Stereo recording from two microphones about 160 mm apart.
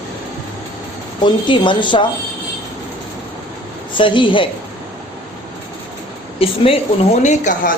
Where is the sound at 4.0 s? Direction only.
30° left (ahead or behind).